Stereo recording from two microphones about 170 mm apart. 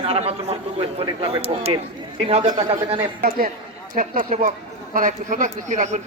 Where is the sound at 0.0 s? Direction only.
35° right (ahead or behind).